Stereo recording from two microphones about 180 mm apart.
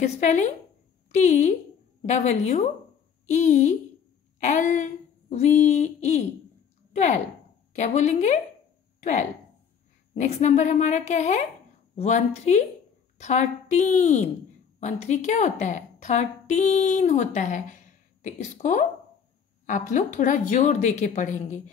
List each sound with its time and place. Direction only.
0.0 s a woman's voice: 40° left (ahead or behind)
10.1 s a woman's voice: 40° left (ahead or behind)